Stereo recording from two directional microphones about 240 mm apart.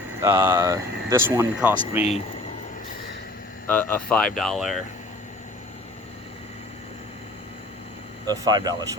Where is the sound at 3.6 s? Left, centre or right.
Centre.